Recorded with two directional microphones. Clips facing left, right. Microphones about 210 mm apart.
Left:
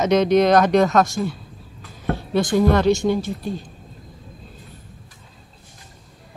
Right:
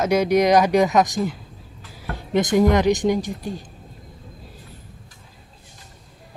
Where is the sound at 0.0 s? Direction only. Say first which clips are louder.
Left 2 dB; 10° right (ahead or behind).